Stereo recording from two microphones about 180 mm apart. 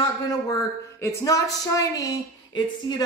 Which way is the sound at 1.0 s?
20° left (ahead or behind).